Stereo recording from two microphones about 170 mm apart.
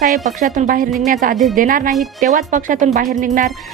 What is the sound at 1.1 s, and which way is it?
Speech, 50° right (ahead or behind).